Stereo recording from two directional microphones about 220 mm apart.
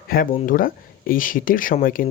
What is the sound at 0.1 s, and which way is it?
Speech, 40° left (ahead or behind).